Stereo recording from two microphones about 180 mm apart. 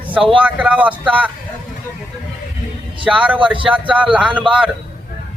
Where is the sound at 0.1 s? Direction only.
5° right (ahead or behind).